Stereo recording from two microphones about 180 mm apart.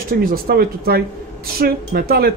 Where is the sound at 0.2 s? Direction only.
55° right (ahead or behind).